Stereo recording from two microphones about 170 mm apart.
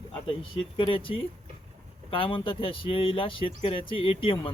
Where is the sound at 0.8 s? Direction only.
30° left (ahead or behind).